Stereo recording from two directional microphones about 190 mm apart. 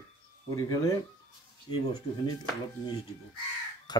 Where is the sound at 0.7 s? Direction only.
15° left (ahead or behind).